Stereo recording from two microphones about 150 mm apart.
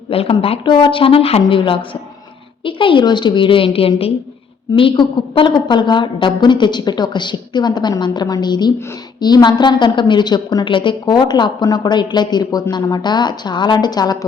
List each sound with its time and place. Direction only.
0.1 s a woman's voice: 40° left (ahead or behind)